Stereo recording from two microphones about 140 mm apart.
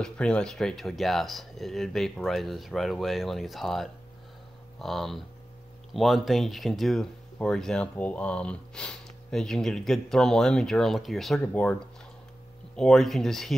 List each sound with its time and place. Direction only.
0.0 s speech: 5° left (ahead or behind)